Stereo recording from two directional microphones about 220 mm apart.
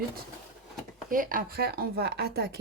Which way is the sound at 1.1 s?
40° right (ahead or behind).